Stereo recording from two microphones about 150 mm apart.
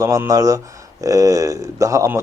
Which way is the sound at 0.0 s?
20° right (ahead or behind).